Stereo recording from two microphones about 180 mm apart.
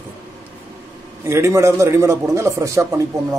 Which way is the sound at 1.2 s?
15° right (ahead or behind).